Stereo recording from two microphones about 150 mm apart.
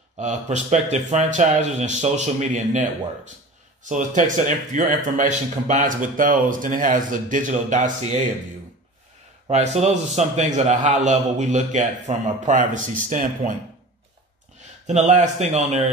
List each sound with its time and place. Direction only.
0.2 s a man's voice: 50° right (ahead or behind)
3.9 s speech: 55° right (ahead or behind)
9.5 s a man's voice: 50° right (ahead or behind)
14.9 s a man's voice: 50° right (ahead or behind)